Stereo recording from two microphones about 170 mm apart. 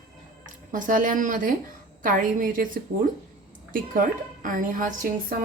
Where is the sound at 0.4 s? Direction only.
50° right (ahead or behind).